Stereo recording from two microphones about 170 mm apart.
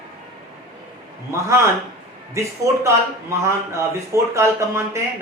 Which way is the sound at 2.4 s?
15° right (ahead or behind).